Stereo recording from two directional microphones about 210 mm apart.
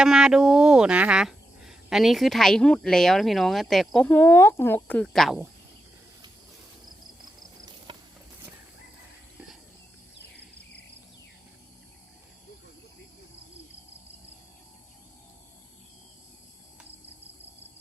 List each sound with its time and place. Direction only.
0.0 s speech: 5° right (ahead or behind)
7.9 s clip-clop: 25° right (ahead or behind)